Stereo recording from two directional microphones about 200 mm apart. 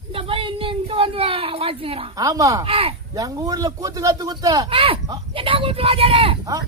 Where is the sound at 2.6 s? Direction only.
25° right (ahead or behind).